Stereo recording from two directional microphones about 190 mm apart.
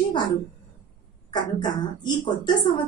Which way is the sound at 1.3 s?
25° left (ahead or behind).